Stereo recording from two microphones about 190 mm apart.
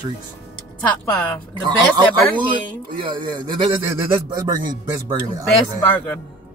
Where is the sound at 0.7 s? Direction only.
5° left (ahead or behind).